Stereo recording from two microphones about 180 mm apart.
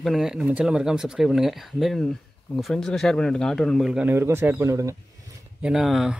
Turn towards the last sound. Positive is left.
turn(degrees=0)  # may be behind; listen again after turning